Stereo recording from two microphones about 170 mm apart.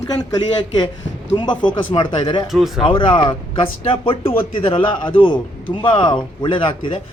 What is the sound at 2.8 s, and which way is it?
A man's voice, 30° left (ahead or behind).